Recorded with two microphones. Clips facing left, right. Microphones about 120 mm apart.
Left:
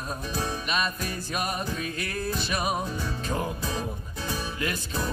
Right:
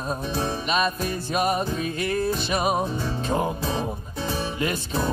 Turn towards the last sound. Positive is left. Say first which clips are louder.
# right 5 dB
turn(degrees=-25)  # may be behind; listen again after turning